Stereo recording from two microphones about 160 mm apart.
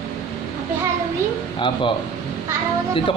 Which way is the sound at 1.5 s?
30° left (ahead or behind).